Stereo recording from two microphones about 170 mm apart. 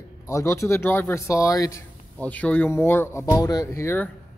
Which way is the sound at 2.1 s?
10° left (ahead or behind).